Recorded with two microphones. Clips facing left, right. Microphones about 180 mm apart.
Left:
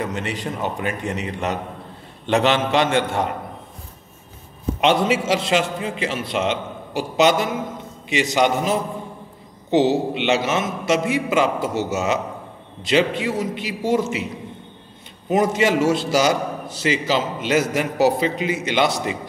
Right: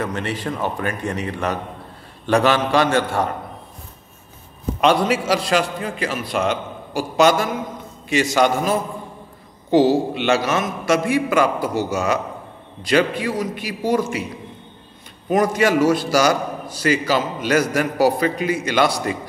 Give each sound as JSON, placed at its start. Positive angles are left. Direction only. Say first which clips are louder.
{"t": 0.0, "sound": "a man's voice", "louder": "right 1 dB", "side_deg": 20}
{"t": 4.7, "sound": "a man's voice", "louder": "right 1 dB", "side_deg": 20}
{"t": 15.2, "sound": "a man's voice", "louder": "right 1 dB", "side_deg": 25}